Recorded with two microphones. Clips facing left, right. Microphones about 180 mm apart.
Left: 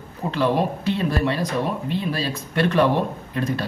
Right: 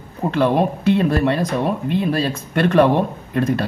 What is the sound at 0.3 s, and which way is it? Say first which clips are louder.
Speech: right 4 dB; 55° right (ahead or behind).